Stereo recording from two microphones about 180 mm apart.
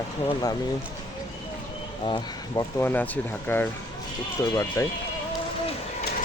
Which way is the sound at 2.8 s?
10° left (ahead or behind).